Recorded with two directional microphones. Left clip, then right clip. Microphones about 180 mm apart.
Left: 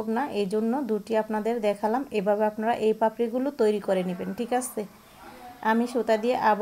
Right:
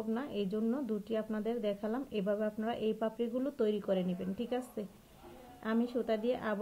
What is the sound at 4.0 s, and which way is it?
Speech, 45° left (ahead or behind).